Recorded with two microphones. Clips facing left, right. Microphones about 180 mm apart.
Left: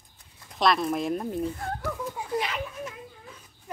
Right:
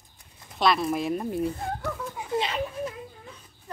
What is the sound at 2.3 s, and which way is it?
Children playing, 30° right (ahead or behind).